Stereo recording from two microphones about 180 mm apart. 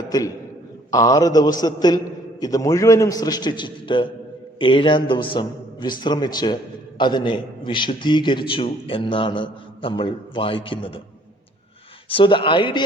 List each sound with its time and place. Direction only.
0.1 s a man's voice: 20° left (ahead or behind)
12.0 s a man's voice: 30° left (ahead or behind)